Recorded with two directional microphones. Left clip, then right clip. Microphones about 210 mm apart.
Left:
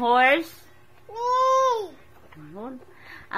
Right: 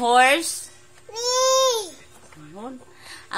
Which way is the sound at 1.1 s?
20° right (ahead or behind).